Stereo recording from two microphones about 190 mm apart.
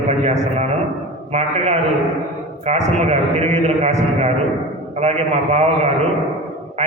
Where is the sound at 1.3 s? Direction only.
35° right (ahead or behind).